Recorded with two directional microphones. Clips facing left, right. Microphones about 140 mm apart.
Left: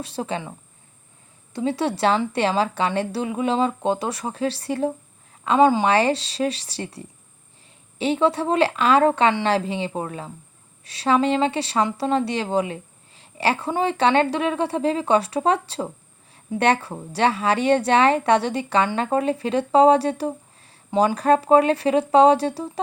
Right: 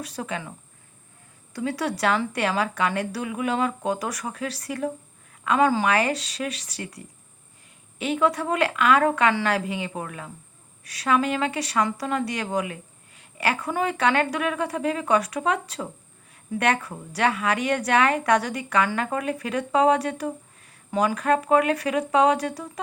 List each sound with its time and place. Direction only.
0.0 s a woman's voice: 30° left (ahead or behind)
1.5 s a woman's voice: 25° left (ahead or behind)